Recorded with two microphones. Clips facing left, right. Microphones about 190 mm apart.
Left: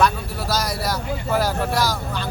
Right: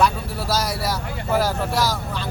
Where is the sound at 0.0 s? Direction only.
5° right (ahead or behind).